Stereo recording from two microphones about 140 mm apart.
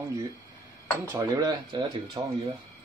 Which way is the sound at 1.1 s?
25° right (ahead or behind).